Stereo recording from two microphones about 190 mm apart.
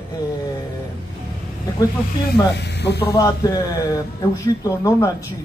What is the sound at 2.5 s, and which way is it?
Speech, 60° left (ahead or behind).